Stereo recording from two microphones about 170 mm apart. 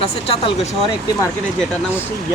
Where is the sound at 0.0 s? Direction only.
35° left (ahead or behind).